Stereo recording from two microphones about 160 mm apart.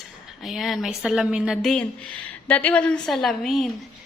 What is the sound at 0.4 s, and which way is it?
A woman's voice, centre (ahead or behind).